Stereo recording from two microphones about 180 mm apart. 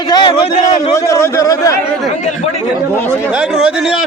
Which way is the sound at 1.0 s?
15° left (ahead or behind).